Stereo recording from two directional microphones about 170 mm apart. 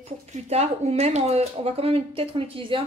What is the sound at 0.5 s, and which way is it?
Speech, 40° right (ahead or behind).